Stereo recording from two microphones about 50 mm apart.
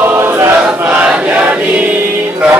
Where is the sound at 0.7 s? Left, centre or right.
Right.